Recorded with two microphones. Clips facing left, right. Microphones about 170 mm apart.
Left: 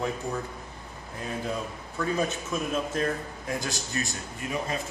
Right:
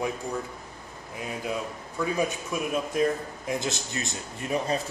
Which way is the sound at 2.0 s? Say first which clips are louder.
Right 1 dB; 10° right (ahead or behind).